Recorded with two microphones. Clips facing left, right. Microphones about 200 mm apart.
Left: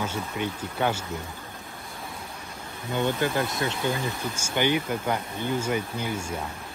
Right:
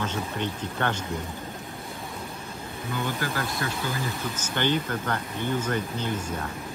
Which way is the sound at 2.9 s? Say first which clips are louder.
Left 5 dB; 20° left (ahead or behind).